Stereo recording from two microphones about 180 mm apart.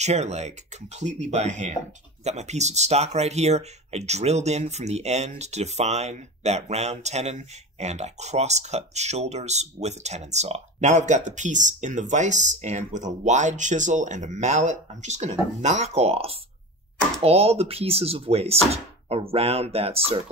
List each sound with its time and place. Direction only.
0.0 s speech: 40° right (ahead or behind)